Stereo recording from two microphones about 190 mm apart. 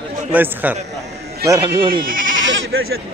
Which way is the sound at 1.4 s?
20° right (ahead or behind).